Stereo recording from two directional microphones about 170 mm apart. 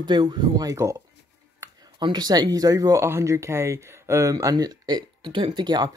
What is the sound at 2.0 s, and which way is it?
Speech, 25° right (ahead or behind).